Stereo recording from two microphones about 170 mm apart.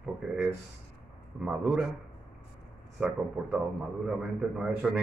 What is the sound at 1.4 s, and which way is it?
Speech, 5° right (ahead or behind).